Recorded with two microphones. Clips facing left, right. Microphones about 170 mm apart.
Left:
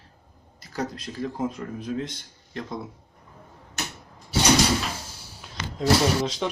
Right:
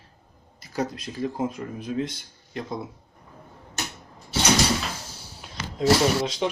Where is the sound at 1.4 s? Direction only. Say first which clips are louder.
Even; 10° right (ahead or behind).